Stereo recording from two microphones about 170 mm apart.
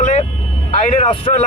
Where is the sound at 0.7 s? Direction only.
40° left (ahead or behind).